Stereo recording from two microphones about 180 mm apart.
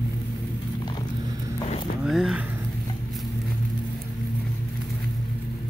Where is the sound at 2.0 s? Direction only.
5° right (ahead or behind).